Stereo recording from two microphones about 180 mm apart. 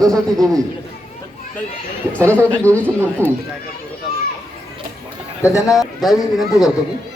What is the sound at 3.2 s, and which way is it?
Speech, 15° right (ahead or behind).